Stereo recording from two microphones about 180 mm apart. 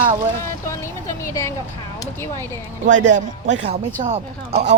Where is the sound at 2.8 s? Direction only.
45° right (ahead or behind).